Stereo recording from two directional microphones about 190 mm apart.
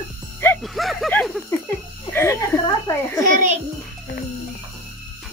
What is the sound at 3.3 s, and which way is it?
Speech, 40° right (ahead or behind).